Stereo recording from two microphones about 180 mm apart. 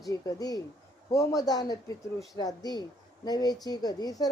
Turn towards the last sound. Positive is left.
turn(degrees=20)  # may be behind; listen again after turning